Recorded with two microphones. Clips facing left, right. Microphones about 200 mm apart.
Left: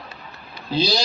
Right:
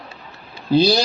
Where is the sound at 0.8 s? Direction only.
60° right (ahead or behind).